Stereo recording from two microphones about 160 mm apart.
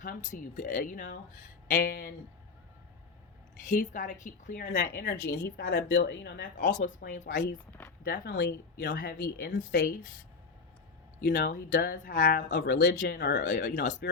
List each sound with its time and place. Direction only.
0.0 s speech: 55° left (ahead or behind)
3.7 s speech: 50° left (ahead or behind); by 5.5 s 70° left (ahead or behind)
5.5 s speech: 90° left; by 7.6 s 65° left (ahead or behind)
7.7 s speech: 10° left (ahead or behind)
8.0 s speech: 70° left (ahead or behind)
11.3 s speech: 70° left (ahead or behind)
13.5 s speech: 65° left (ahead or behind)